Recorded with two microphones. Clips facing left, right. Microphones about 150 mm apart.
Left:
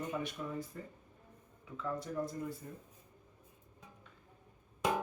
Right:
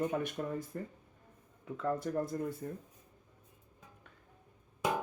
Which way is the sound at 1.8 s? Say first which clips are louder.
Right 4 dB; 50° right (ahead or behind).